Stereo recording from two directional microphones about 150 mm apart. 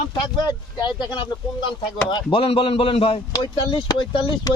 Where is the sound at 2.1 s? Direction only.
35° left (ahead or behind).